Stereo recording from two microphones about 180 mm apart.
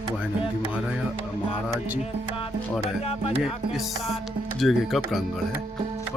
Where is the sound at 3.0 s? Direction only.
35° left (ahead or behind).